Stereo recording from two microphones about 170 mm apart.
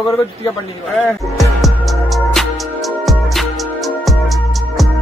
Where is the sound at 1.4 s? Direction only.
Centre (ahead or behind).